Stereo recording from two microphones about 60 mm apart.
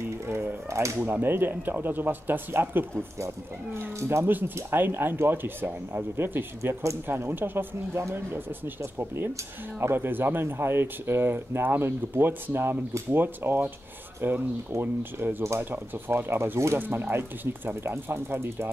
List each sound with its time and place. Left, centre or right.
0.3 s a sound: right
1.2 s speech: right
3.7 s speech: right
7.1 s speech: right
9.8 s speech: right
16.7 s speech: right